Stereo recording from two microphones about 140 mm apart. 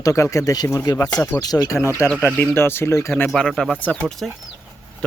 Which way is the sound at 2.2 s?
10° left (ahead or behind).